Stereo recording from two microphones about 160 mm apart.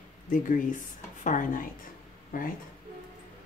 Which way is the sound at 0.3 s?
55° left (ahead or behind).